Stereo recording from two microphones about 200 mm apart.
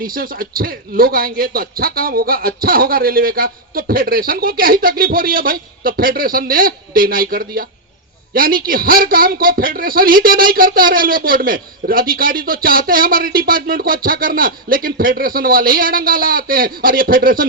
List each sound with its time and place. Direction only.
0.0 s a man's voice: 45° right (ahead or behind)